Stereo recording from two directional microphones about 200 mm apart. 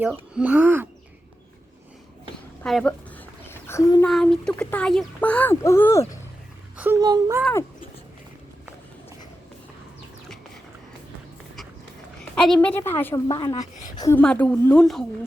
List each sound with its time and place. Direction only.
0.0 s speech: 5° right (ahead or behind)
2.6 s a sound: 5° left (ahead or behind)
4.0 s speech: centre (ahead or behind)
6.7 s speech: 10° right (ahead or behind)
12.4 s speech: 5° left (ahead or behind)
13.2 s a woman's voice: 25° left (ahead or behind)
13.9 s a sound: 20° left (ahead or behind)
14.2 s a woman's voice: 5° left (ahead or behind)